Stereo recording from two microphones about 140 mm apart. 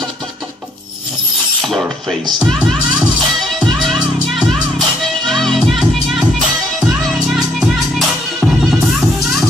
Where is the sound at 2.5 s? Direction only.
10° right (ahead or behind).